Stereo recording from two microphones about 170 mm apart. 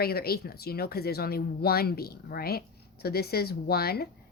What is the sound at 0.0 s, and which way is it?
Speech, 65° left (ahead or behind).